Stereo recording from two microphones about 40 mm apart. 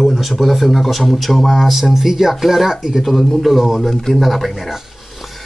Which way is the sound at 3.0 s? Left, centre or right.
Centre.